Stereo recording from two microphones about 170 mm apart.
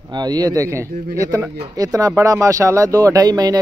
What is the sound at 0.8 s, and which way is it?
Speech, 60° right (ahead or behind).